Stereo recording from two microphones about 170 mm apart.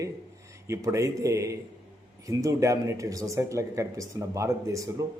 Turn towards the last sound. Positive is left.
turn(degrees=-20)  # may be behind; listen again after turning